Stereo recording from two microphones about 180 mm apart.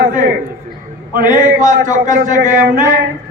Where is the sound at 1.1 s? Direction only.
45° right (ahead or behind).